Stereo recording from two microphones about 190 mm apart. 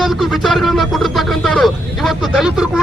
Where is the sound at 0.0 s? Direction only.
Centre (ahead or behind).